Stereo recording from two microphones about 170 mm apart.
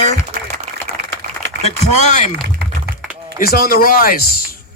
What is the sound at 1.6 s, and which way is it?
Speech, 45° left (ahead or behind).